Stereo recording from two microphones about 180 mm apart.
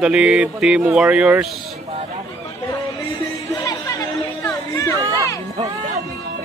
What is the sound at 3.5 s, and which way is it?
Chatter, 20° left (ahead or behind).